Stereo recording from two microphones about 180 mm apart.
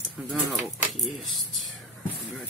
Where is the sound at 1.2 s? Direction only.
Centre (ahead or behind).